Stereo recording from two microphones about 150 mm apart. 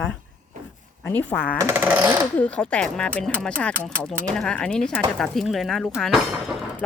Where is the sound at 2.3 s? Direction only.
10° left (ahead or behind).